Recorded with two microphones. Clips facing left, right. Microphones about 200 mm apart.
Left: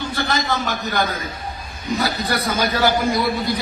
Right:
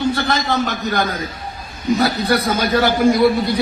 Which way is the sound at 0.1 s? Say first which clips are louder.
Right 3 dB; 60° right (ahead or behind).